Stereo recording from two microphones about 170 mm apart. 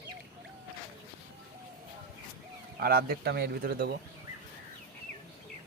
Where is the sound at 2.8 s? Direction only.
65° right (ahead or behind).